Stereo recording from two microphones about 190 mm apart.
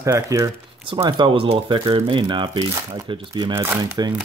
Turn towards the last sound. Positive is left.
turn(degrees=-20)  # may be behind; listen again after turning